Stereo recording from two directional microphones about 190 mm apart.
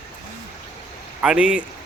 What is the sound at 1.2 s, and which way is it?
Speech, 5° right (ahead or behind).